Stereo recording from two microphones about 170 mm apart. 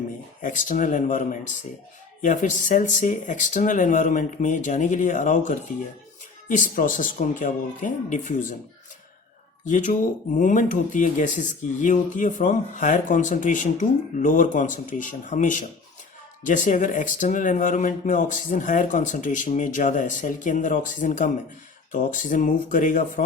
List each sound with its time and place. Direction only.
0.4 s speech: 50° left (ahead or behind)
9.6 s speech: 50° left (ahead or behind)